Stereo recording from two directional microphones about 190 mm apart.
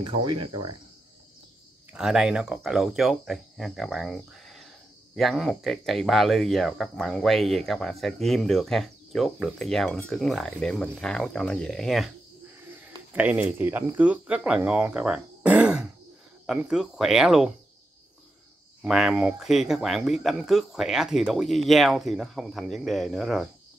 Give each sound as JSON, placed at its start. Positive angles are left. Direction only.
{"t": 0.0, "sound": "speech", "side_deg": -25}
{"t": 1.9, "sound": "speech", "side_deg": -5}
{"t": 13.1, "sound": "speech", "side_deg": -10}
{"t": 18.8, "sound": "speech", "side_deg": -5}